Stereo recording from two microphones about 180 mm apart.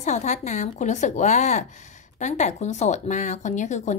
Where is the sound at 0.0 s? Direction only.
40° left (ahead or behind).